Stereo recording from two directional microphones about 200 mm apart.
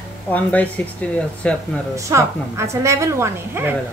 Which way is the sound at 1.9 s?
15° right (ahead or behind).